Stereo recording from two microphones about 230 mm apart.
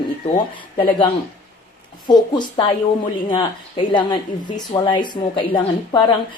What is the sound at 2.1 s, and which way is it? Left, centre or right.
A woman's voice, left.